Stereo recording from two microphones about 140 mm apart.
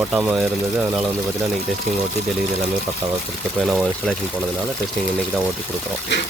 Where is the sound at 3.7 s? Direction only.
5° right (ahead or behind).